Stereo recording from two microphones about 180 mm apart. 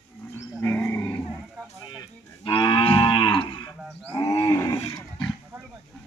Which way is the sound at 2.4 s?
25° left (ahead or behind).